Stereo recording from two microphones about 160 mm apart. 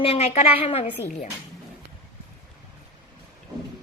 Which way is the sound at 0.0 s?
40° left (ahead or behind).